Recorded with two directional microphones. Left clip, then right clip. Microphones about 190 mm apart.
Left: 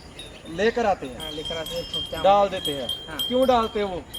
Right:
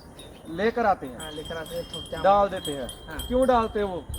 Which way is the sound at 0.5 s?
20° left (ahead or behind).